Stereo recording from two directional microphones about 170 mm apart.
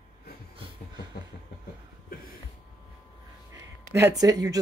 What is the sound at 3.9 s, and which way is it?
Speech, 20° right (ahead or behind).